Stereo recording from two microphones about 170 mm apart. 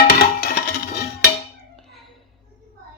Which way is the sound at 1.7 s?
Centre (ahead or behind).